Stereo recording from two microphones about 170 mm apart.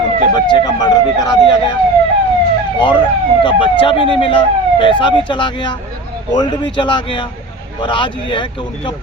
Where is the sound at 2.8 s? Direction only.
30° left (ahead or behind).